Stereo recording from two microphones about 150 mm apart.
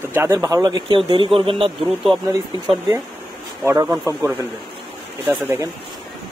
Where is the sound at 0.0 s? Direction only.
15° right (ahead or behind); by 2.0 s 35° right (ahead or behind).